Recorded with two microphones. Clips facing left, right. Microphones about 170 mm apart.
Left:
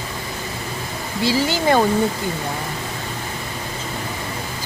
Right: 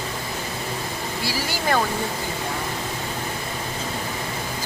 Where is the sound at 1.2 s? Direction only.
20° left (ahead or behind).